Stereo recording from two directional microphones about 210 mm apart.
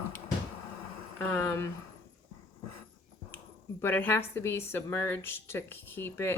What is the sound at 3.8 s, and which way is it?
A woman's voice, 10° left (ahead or behind).